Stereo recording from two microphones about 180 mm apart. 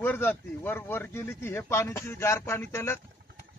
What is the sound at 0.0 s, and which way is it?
Speech, 10° left (ahead or behind).